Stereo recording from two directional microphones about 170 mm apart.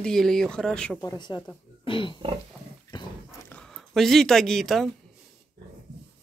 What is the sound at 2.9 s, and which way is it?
Dog, 25° left (ahead or behind).